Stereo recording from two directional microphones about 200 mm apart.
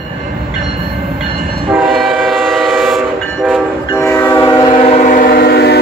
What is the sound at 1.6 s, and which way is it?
Train, centre (ahead or behind).